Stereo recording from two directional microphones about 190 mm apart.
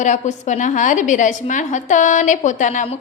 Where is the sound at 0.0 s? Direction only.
40° left (ahead or behind).